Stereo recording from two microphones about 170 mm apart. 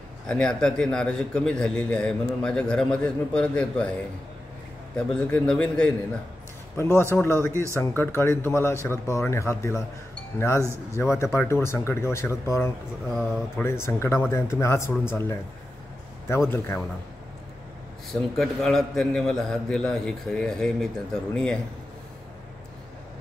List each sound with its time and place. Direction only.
0.3 s a man's voice: 5° left (ahead or behind)
4.9 s a man's voice: 5° left (ahead or behind)
13.1 s a man's voice: centre (ahead or behind)
13.6 s speech: 15° left (ahead or behind)
18.3 s a man's voice: centre (ahead or behind)